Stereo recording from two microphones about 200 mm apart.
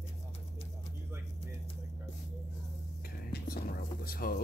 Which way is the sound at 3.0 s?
50° left (ahead or behind).